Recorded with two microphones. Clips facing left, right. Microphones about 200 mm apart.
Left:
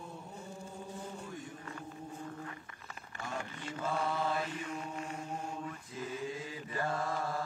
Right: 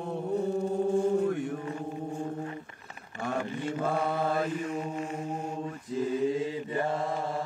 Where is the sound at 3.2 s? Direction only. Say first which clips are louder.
Right 10 dB; 60° right (ahead or behind).